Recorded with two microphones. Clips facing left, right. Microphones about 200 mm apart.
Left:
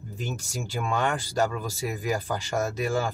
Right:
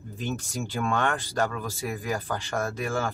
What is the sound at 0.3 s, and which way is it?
Speech, 10° left (ahead or behind).